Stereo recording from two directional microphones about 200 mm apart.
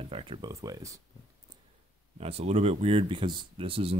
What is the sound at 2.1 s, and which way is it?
Speech, 30° right (ahead or behind).